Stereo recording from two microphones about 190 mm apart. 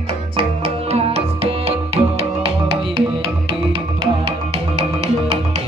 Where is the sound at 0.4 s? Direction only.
30° right (ahead or behind).